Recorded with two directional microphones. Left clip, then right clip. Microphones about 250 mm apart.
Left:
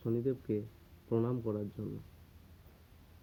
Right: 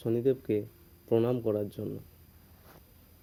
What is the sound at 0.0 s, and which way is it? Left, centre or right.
Speech, right.